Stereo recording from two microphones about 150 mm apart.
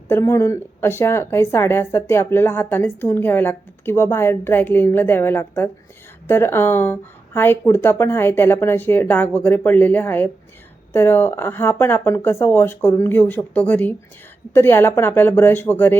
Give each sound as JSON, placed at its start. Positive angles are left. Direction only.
{"t": 0.1, "sound": "a woman's voice", "side_deg": 20}